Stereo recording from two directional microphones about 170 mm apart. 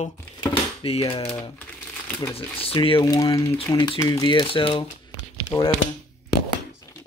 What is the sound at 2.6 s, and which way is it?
Speech, 35° left (ahead or behind).